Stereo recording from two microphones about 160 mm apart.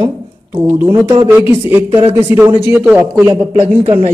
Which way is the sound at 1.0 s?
15° right (ahead or behind).